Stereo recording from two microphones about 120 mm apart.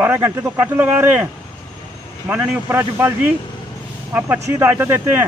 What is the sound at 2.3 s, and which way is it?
A man's voice, 20° right (ahead or behind).